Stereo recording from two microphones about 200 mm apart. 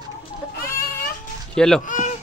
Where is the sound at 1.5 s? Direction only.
5° left (ahead or behind).